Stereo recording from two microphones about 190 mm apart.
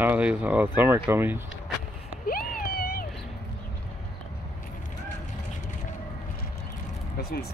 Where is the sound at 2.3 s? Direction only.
50° left (ahead or behind).